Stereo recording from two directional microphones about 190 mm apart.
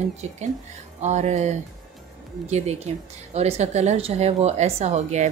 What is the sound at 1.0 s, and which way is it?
Speech, 40° right (ahead or behind).